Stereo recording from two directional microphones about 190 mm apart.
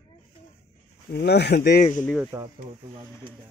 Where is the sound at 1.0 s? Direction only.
55° left (ahead or behind).